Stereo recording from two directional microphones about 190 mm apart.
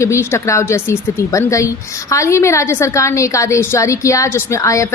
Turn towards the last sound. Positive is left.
turn(degrees=15)  # may be behind; listen again after turning